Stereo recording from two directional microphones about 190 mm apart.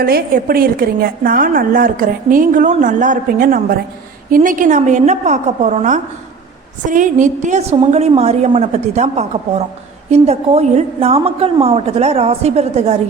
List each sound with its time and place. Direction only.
0.0 s a woman's voice: 55° right (ahead or behind); by 13.0 s 35° right (ahead or behind)